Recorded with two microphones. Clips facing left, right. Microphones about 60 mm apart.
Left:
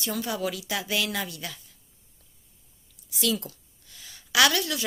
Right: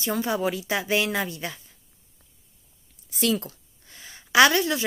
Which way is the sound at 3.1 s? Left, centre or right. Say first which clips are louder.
Right 3 dB; right.